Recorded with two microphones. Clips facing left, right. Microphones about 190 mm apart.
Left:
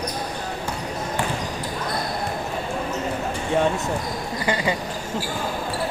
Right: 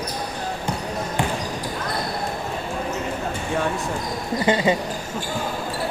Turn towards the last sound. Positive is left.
turn(degrees=-20)  # may be behind; listen again after turning